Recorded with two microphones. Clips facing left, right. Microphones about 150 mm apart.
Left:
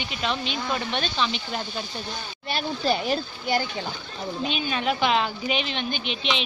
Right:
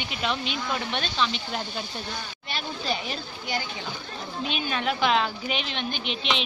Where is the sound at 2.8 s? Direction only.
35° left (ahead or behind).